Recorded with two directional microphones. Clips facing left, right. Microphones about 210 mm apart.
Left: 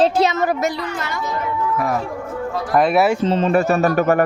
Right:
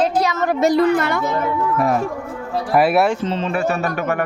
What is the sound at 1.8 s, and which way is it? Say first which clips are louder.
Speech: right 4 dB; 25° right (ahead or behind).